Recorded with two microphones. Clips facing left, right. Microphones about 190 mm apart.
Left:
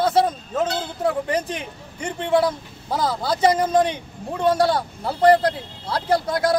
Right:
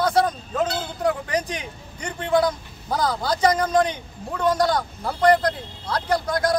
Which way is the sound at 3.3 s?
25° left (ahead or behind).